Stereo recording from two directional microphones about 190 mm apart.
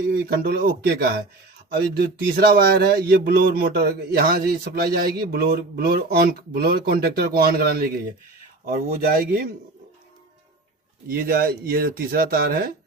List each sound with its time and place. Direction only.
0.1 s speech: 55° right (ahead or behind)
11.1 s speech: 50° right (ahead or behind)